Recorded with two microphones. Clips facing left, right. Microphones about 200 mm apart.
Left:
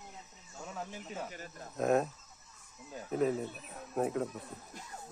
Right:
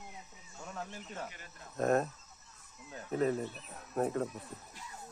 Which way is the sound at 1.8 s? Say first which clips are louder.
Left 1 dB; centre (ahead or behind).